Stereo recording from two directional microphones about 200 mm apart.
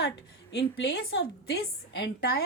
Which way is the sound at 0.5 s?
65° left (ahead or behind).